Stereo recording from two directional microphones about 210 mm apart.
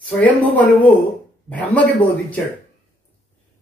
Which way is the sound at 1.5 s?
5° left (ahead or behind).